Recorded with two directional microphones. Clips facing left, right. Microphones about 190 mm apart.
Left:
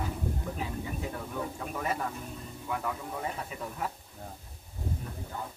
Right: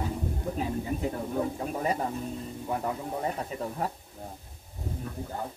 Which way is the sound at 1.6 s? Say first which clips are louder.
Right 4 dB; 35° right (ahead or behind).